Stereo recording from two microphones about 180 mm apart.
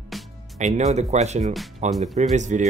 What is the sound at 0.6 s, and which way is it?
Speech, 40° right (ahead or behind).